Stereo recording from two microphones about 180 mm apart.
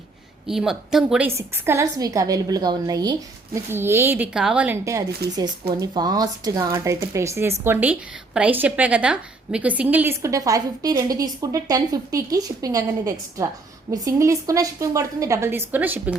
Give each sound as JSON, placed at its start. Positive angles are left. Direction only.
{"t": 0.4, "sound": "a woman's voice", "side_deg": 0}
{"t": 1.4, "sound": "speech", "side_deg": -15}